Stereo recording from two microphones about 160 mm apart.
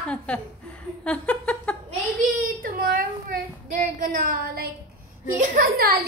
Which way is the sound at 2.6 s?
65° right (ahead or behind).